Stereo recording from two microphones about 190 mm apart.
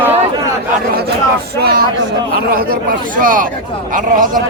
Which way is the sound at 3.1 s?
45° right (ahead or behind).